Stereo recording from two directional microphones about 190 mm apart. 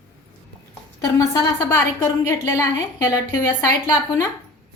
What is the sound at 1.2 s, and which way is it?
A woman's voice, 15° left (ahead or behind).